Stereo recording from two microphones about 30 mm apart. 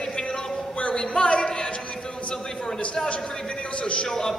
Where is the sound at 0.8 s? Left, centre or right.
Left.